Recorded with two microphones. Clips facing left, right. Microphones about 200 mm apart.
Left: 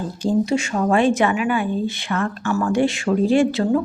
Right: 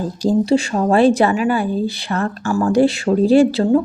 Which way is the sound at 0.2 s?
35° right (ahead or behind).